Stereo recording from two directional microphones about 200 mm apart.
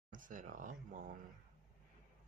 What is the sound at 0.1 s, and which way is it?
Speech, 40° right (ahead or behind).